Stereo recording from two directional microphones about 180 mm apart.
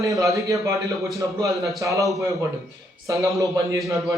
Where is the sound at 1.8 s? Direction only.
15° right (ahead or behind).